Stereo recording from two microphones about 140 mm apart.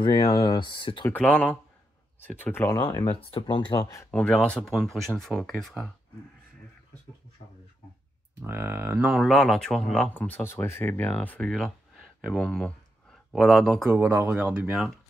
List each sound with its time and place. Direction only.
0.0 s speech: 30° left (ahead or behind)
1.1 s speech: 10° left (ahead or behind)
3.1 s speech: 40° left (ahead or behind)
3.8 s speech: 20° left (ahead or behind)
4.1 s speech: 10° left (ahead or behind)
8.4 s speech: 15° right (ahead or behind); by 13.8 s centre (ahead or behind)
13.8 s speech: 15° right (ahead or behind)